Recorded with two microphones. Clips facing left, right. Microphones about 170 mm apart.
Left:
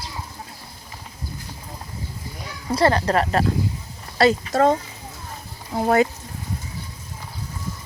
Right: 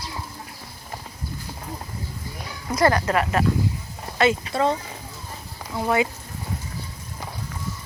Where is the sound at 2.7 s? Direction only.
30° left (ahead or behind).